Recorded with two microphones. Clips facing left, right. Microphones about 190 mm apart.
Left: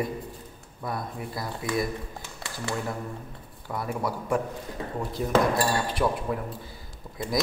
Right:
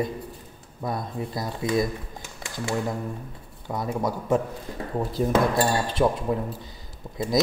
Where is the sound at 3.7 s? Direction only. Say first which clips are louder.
Right 3 dB; 20° right (ahead or behind).